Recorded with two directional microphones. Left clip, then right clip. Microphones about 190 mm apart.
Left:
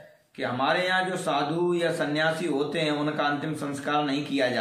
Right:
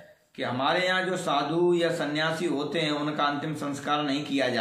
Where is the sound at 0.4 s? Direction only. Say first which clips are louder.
Left 1 dB; 10° left (ahead or behind).